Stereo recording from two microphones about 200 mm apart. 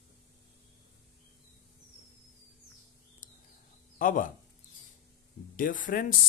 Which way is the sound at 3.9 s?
40° left (ahead or behind).